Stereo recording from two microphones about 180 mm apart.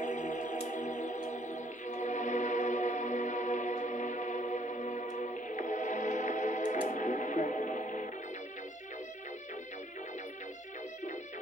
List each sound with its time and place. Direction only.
0.0 s music: 45° left (ahead or behind)